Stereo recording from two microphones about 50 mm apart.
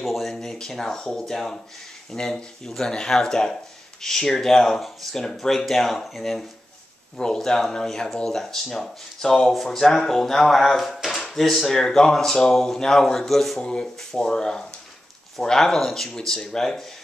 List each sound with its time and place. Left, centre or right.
0.0 s speech: centre
0.3 s speech: centre
7.2 s speech: centre
13.6 s speech: centre